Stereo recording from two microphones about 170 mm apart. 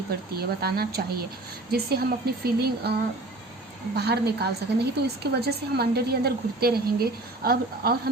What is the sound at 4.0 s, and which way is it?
A woman's voice, 70° right (ahead or behind).